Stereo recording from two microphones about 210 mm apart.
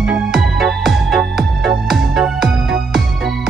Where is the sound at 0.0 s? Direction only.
5° right (ahead or behind).